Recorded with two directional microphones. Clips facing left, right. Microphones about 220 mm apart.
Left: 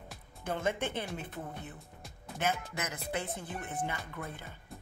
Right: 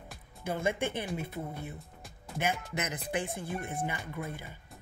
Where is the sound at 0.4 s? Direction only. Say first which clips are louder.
Right 2 dB; 10° right (ahead or behind).